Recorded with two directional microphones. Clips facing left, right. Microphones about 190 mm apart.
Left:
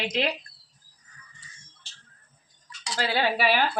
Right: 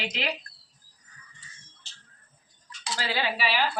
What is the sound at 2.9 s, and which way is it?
Speech, 50° left (ahead or behind).